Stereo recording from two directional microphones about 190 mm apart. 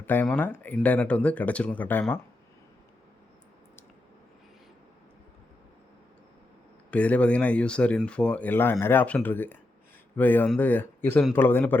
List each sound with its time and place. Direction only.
0.0 s speech: 10° left (ahead or behind)
6.9 s speech: 5° left (ahead or behind)